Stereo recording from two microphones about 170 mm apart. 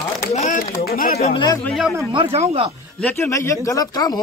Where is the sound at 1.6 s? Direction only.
Centre (ahead or behind).